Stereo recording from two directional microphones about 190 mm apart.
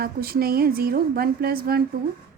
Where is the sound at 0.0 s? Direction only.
50° right (ahead or behind).